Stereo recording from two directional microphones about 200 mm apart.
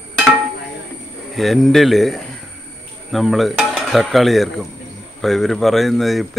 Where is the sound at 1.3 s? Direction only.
Centre (ahead or behind).